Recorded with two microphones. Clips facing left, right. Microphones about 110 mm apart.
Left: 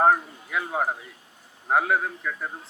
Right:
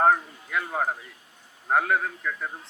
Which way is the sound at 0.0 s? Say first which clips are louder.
Left 1 dB; 10° left (ahead or behind).